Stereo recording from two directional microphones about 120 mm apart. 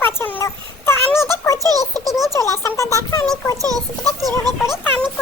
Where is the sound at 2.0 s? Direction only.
Centre (ahead or behind).